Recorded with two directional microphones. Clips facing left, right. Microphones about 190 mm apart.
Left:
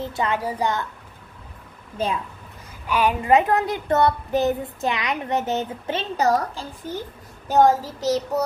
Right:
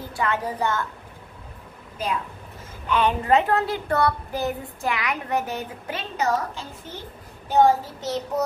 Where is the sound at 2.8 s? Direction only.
10° left (ahead or behind).